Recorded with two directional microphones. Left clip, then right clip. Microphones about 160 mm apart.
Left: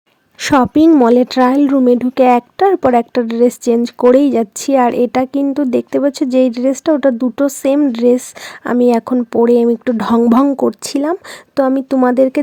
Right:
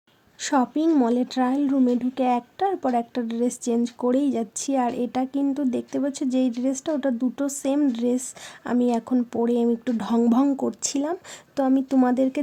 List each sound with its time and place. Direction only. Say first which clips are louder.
0.3 s speech: left 12 dB; 40° left (ahead or behind)